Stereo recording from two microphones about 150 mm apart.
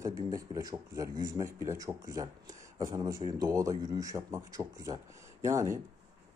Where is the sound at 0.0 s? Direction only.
20° right (ahead or behind).